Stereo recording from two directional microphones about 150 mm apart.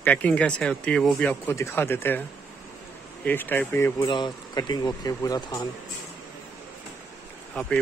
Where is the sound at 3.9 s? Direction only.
30° left (ahead or behind).